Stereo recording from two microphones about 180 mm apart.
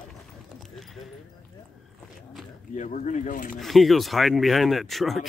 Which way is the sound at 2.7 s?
45° left (ahead or behind).